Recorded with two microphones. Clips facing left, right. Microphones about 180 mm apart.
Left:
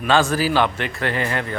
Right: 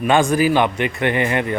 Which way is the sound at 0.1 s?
15° right (ahead or behind).